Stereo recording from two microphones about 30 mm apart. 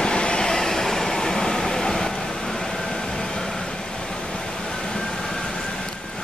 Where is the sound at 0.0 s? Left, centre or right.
Left.